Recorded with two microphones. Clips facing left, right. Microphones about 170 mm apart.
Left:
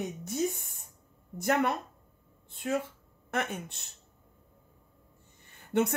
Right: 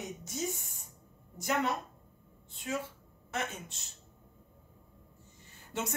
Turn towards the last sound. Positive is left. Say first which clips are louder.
# left 10 dB
turn(degrees=60)  # may be behind; listen again after turning